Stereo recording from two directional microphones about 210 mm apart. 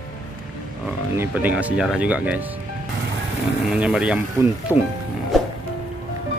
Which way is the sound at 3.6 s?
5° right (ahead or behind).